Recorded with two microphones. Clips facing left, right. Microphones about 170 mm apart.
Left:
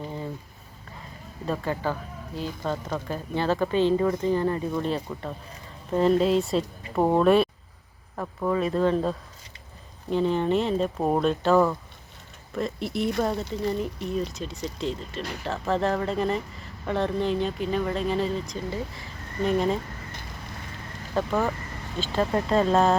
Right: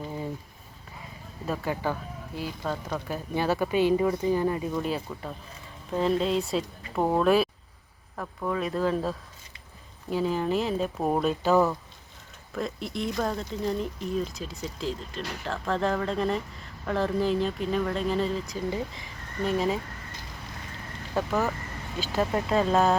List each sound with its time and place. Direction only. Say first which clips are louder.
1.5 s speech: left 1 dB; 10° right (ahead or behind)
18.7 s speech: right 1 dB; 15° right (ahead or behind)
19.4 s speech: left 2 dB; centre (ahead or behind)
21.2 s speech: left 2 dB; 5° right (ahead or behind)